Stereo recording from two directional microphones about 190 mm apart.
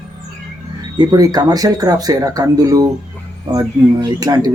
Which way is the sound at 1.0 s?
20° right (ahead or behind).